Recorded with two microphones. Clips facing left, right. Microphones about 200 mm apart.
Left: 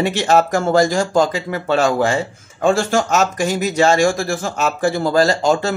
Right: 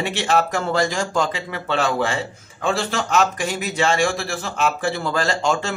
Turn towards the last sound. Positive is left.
turn(degrees=40)  # may be behind; listen again after turning